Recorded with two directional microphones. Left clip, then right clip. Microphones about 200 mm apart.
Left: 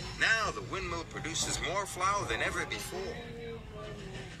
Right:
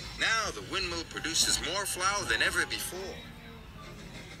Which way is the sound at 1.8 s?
30° right (ahead or behind).